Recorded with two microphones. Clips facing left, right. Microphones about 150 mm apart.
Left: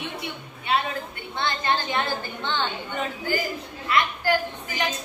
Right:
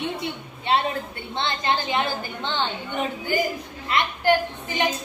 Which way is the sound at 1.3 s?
20° right (ahead or behind).